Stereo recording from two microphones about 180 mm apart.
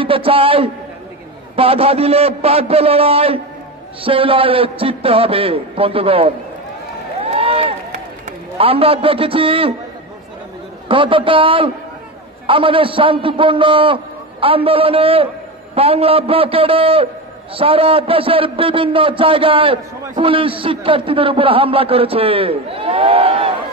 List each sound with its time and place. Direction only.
0.0 s a man's voice: 30° right (ahead or behind)
7.2 s run: 30° right (ahead or behind)
8.5 s a man's voice: 30° right (ahead or behind)
10.9 s a man's voice: 30° right (ahead or behind)